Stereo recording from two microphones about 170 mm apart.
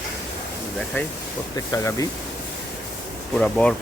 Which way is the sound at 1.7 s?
20° left (ahead or behind).